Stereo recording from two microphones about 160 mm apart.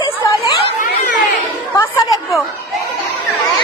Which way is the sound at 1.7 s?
20° left (ahead or behind).